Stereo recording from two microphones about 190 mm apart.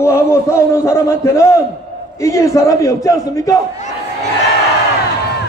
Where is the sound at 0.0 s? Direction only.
15° left (ahead or behind).